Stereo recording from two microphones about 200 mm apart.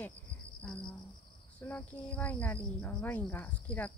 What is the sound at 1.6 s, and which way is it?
Speech, 5° left (ahead or behind).